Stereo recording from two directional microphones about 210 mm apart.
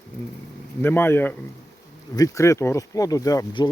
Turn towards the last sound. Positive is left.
turn(degrees=15)  # may be behind; listen again after turning